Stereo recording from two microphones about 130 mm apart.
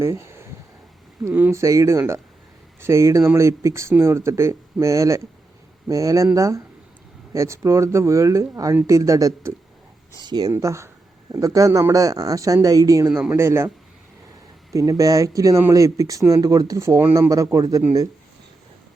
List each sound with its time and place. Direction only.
0.0 s speech: 20° right (ahead or behind)
10.5 s speech: 20° right (ahead or behind)
14.7 s speech: 25° right (ahead or behind)